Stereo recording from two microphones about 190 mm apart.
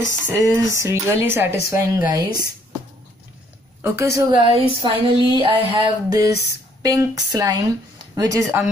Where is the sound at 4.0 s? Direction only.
15° right (ahead or behind).